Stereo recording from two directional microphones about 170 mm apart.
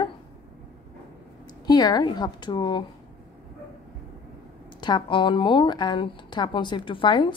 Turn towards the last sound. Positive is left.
turn(degrees=25)  # may be behind; listen again after turning